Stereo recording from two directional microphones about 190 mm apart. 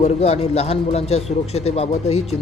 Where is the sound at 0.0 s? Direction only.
35° left (ahead or behind).